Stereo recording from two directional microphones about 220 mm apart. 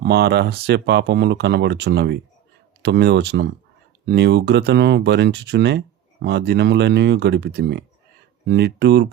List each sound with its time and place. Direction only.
0.0 s speech: 45° right (ahead or behind)